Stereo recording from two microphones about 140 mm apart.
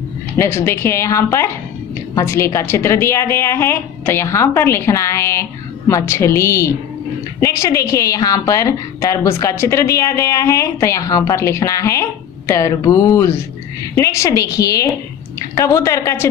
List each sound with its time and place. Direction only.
0.4 s a woman's voice: 15° left (ahead or behind)